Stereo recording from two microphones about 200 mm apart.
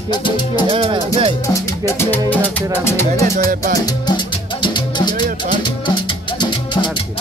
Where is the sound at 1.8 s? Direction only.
10° left (ahead or behind).